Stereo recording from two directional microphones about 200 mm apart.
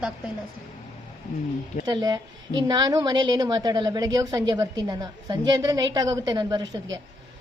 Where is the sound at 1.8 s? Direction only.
20° right (ahead or behind).